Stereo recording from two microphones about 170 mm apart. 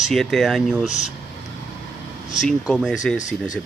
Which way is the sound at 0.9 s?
45° left (ahead or behind).